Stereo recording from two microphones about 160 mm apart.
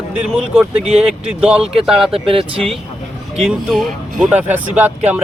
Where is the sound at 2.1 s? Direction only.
35° right (ahead or behind).